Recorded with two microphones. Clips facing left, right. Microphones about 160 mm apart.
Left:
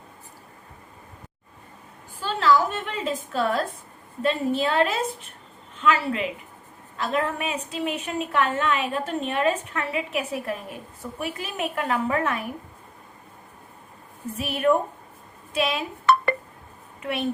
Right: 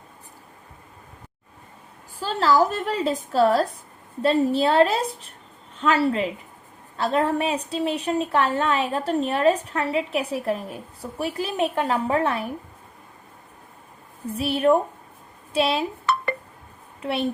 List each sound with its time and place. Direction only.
2.2 s a woman's voice: 40° right (ahead or behind)
14.3 s a woman's voice: 30° right (ahead or behind)
16.1 s a sound: 60° left (ahead or behind)
17.0 s speech: 30° right (ahead or behind)